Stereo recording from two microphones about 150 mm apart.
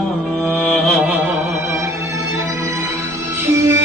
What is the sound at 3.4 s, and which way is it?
Music, 20° right (ahead or behind).